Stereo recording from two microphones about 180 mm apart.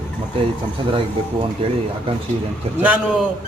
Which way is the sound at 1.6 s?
30° right (ahead or behind).